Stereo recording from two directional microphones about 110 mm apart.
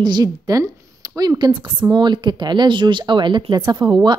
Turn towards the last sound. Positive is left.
turn(degrees=-40)  # may be behind; listen again after turning